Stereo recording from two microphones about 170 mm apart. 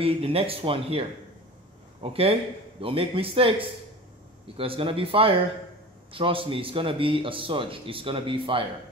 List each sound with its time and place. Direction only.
0.0 s a man's voice: 35° right (ahead or behind)